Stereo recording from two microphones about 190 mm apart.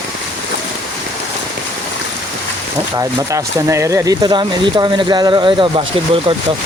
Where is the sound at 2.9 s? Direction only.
15° right (ahead or behind).